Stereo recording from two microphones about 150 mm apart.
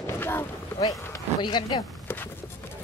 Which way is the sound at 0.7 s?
25° left (ahead or behind).